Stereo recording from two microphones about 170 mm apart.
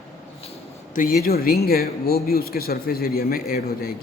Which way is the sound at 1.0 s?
60° left (ahead or behind).